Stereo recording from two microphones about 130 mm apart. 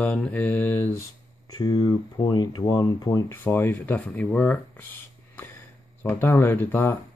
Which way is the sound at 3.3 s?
15° left (ahead or behind).